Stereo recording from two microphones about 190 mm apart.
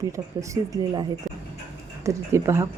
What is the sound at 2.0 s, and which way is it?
Speech, 15° right (ahead or behind).